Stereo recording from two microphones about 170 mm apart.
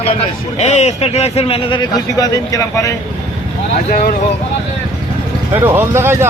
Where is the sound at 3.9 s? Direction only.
60° left (ahead or behind).